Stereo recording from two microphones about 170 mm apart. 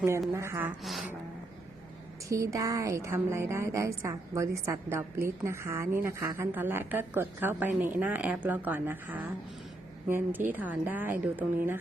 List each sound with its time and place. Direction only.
0.3 s a woman's voice: 15° right (ahead or behind)
0.8 s speech: centre (ahead or behind)
2.3 s a woman's voice: 20° right (ahead or behind)